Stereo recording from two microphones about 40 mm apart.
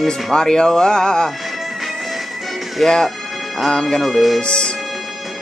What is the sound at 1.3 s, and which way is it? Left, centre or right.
Music, centre.